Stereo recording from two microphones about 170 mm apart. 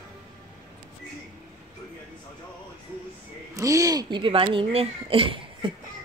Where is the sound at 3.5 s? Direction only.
20° right (ahead or behind).